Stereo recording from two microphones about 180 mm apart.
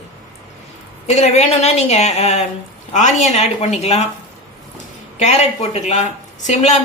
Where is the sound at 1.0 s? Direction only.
40° left (ahead or behind).